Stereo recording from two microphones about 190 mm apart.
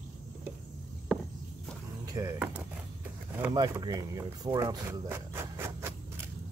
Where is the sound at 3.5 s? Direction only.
20° right (ahead or behind).